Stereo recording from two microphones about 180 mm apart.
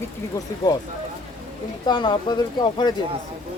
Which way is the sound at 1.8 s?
25° left (ahead or behind).